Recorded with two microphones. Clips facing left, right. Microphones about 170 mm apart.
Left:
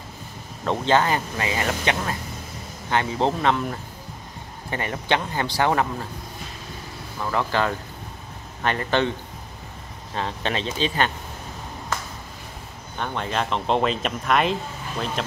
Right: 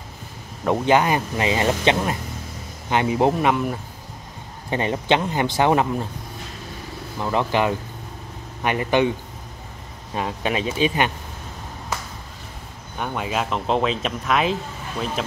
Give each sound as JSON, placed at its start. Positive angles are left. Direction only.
{"t": 0.7, "sound": "speech", "side_deg": -15}
{"t": 4.6, "sound": "speech", "side_deg": -20}
{"t": 7.2, "sound": "speech", "side_deg": -20}
{"t": 10.1, "sound": "speech", "side_deg": -10}
{"t": 13.0, "sound": "speech", "side_deg": -5}